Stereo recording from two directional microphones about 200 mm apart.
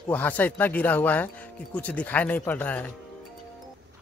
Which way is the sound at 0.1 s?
10° left (ahead or behind).